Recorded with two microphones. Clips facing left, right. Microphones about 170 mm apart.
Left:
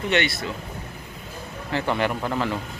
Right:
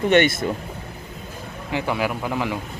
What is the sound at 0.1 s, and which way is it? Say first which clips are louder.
Speech: right 6 dB; 50° right (ahead or behind).